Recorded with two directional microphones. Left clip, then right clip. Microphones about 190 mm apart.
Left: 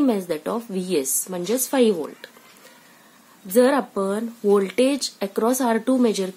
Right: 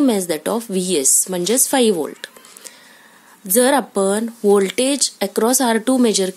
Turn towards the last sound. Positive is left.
turn(degrees=-40)  # may be behind; listen again after turning